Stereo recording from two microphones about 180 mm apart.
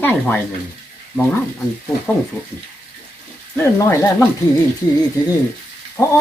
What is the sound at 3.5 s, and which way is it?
Speech, 15° left (ahead or behind).